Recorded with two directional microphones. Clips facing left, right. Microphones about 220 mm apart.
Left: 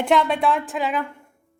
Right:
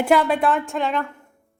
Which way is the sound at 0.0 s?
5° right (ahead or behind).